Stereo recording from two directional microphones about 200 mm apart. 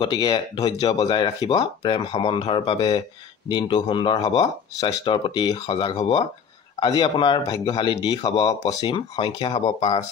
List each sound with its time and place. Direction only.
0.0 s speech: 20° left (ahead or behind)